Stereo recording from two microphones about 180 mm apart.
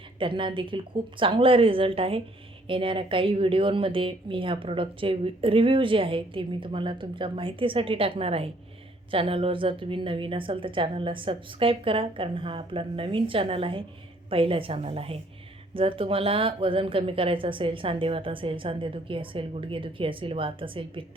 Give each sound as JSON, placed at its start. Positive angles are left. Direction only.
{"t": 0.2, "sound": "a woman's voice", "side_deg": -30}